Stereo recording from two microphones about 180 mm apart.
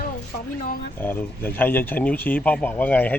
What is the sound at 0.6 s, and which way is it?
Speech, 50° left (ahead or behind).